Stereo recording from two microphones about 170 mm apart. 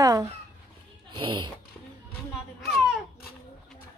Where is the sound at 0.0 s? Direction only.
20° right (ahead or behind).